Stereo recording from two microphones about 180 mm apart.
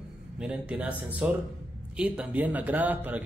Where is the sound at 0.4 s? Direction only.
5° right (ahead or behind).